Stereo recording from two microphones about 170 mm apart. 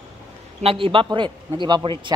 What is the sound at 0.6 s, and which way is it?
A man's voice, 35° right (ahead or behind).